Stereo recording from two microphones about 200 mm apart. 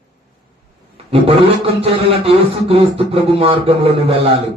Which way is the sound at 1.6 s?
30° right (ahead or behind).